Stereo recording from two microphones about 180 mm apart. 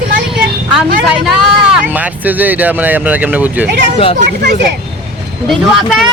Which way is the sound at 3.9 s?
30° left (ahead or behind).